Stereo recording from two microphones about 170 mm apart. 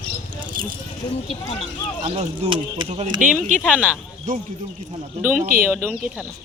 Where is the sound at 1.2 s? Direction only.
35° left (ahead or behind).